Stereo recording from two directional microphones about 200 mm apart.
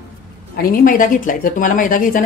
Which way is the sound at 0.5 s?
45° left (ahead or behind).